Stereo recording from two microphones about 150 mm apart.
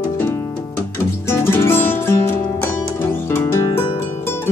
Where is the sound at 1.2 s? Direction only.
15° left (ahead or behind).